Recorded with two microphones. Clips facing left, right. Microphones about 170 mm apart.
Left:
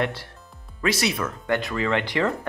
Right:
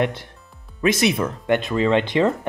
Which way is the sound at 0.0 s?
20° right (ahead or behind).